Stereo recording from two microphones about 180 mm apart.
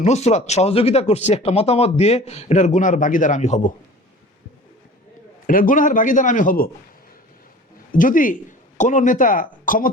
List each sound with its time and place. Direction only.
0.0 s speech: 40° left (ahead or behind)
5.5 s a man's voice: 50° left (ahead or behind)
7.9 s speech: 50° left (ahead or behind)